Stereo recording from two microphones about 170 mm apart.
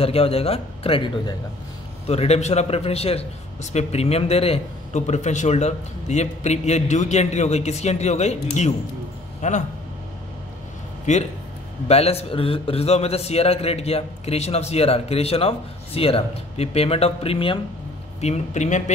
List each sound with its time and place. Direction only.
0.0 s a man's voice: 35° left (ahead or behind)
11.1 s a man's voice: 45° left (ahead or behind)